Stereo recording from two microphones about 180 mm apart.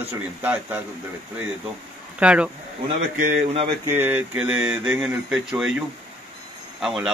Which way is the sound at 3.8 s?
10° right (ahead or behind).